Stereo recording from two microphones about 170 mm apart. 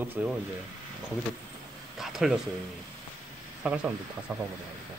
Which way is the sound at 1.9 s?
Centre (ahead or behind).